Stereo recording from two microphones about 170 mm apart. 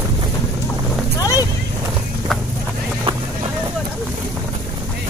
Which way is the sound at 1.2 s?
20° left (ahead or behind).